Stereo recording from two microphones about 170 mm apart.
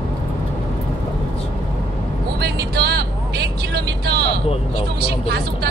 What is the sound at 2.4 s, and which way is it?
Vehicle, 70° right (ahead or behind).